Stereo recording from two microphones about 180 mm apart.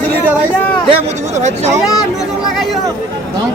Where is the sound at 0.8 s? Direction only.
35° right (ahead or behind).